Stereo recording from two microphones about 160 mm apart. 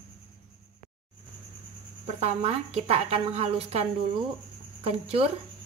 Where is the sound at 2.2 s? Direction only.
40° right (ahead or behind).